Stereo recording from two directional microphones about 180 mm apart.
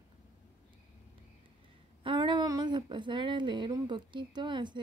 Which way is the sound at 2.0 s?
25° right (ahead or behind).